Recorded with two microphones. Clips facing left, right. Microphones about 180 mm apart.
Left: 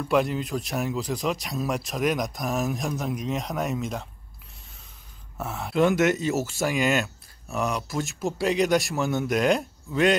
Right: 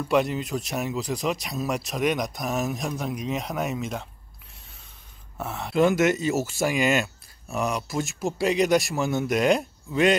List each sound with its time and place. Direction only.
0.0 s speech: centre (ahead or behind)
5.4 s speech: centre (ahead or behind)